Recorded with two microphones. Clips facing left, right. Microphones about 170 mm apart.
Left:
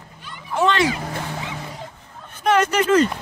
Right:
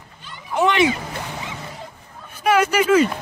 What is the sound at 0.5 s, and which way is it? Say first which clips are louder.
Speech: right 1 dB; 15° right (ahead or behind).